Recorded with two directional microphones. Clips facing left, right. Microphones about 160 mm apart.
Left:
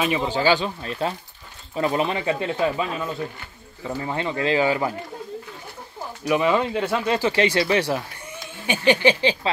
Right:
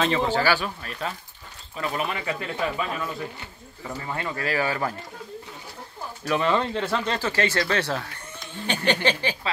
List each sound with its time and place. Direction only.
0.0 s speech: 15° left (ahead or behind)
6.2 s speech: 10° left (ahead or behind)